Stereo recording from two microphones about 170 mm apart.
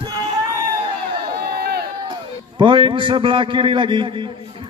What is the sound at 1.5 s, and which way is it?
Run, 65° right (ahead or behind).